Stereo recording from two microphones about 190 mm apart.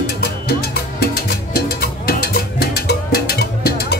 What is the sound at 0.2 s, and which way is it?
Music, 55° left (ahead or behind).